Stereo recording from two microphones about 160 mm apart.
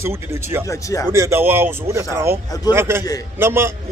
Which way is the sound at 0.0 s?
15° right (ahead or behind).